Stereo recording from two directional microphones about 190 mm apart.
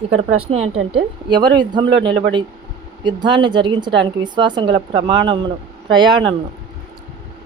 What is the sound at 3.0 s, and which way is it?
A woman's voice, 25° right (ahead or behind).